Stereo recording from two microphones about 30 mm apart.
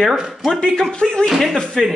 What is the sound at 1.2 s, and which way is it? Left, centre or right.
Speech, centre.